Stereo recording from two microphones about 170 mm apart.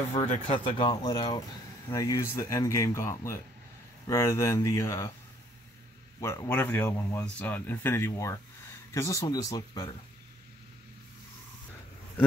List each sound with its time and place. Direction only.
0.1 s speech: 35° left (ahead or behind); by 3.0 s 20° left (ahead or behind)
4.1 s speech: 15° left (ahead or behind)
6.2 s speech: 15° left (ahead or behind)